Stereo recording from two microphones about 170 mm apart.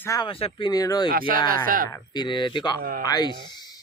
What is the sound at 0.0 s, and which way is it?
Speech, 20° left (ahead or behind).